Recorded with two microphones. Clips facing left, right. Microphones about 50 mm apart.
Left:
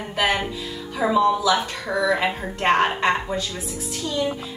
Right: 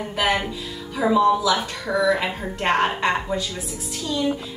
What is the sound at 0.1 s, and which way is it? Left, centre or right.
Music, centre.